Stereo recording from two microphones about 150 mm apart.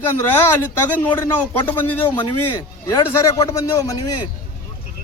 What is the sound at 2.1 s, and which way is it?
A man's voice, 30° left (ahead or behind).